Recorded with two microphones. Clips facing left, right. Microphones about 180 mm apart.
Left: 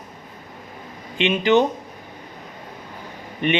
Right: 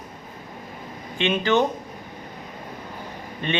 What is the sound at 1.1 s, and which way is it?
Speech, 15° left (ahead or behind).